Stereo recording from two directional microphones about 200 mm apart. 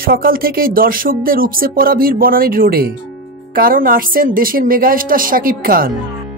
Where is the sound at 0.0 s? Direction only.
45° right (ahead or behind).